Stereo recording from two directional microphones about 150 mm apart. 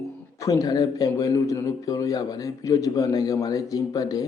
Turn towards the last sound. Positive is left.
turn(degrees=25)  # may be behind; listen again after turning